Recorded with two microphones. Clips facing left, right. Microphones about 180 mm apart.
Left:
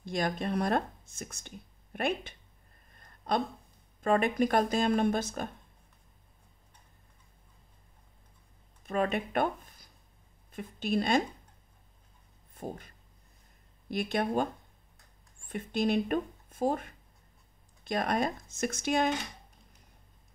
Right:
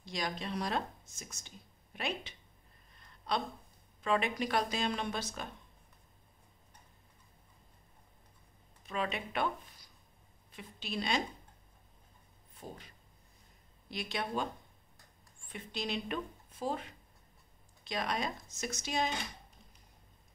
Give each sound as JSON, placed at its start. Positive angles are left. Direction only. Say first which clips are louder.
{"t": 0.0, "sound": "speech", "louder": "left 7 dB", "side_deg": 55}
{"t": 2.9, "sound": "a sound", "louder": "left 5 dB", "side_deg": 50}
{"t": 4.0, "sound": "speech", "louder": "left 6 dB", "side_deg": 50}
{"t": 8.8, "sound": "speech", "louder": "left 7 dB", "side_deg": 50}
{"t": 12.5, "sound": "a sound", "louder": "left 8 dB", "side_deg": 50}
{"t": 13.8, "sound": "speech", "louder": "left 8 dB", "side_deg": 50}